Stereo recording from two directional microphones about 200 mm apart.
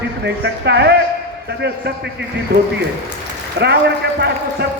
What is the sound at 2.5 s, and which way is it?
Speech, 50° right (ahead or behind).